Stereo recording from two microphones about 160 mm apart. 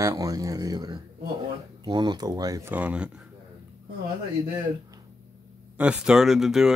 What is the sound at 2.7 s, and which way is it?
Speech, 10° right (ahead or behind).